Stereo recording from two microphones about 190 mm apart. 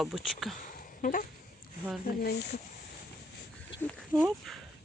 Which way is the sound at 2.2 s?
55° left (ahead or behind).